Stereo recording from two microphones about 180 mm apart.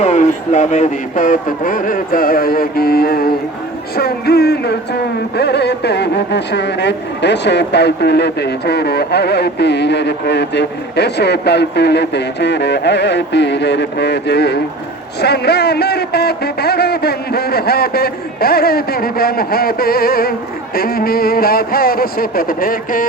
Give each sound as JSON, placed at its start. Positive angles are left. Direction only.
{"t": 0.0, "sound": "a man's voice", "side_deg": 40}